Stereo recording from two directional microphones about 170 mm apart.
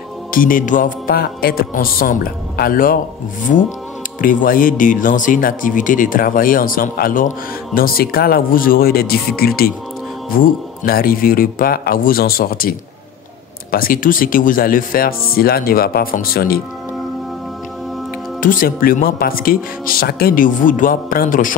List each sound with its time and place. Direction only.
0.3 s speech: 55° left (ahead or behind)
18.4 s speech: 55° left (ahead or behind)